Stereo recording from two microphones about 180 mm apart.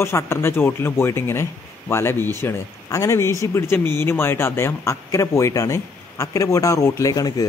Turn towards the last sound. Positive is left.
turn(degrees=20)  # may be behind; listen again after turning